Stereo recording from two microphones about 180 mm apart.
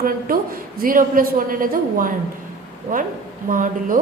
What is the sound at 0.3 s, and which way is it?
A woman's voice, 55° right (ahead or behind).